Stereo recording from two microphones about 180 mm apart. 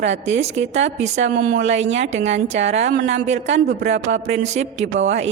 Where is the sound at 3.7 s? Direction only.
75° right (ahead or behind).